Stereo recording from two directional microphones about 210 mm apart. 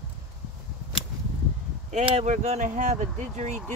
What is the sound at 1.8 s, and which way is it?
Speech, 30° right (ahead or behind).